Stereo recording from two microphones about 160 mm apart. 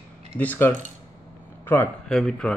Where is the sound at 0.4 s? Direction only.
10° left (ahead or behind).